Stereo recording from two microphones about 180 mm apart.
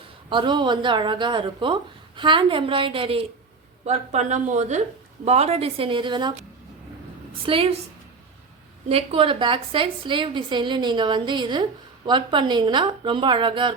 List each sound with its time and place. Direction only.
0.3 s speech: 25° right (ahead or behind)
7.4 s speech: 30° right (ahead or behind)
8.9 s speech: 30° right (ahead or behind)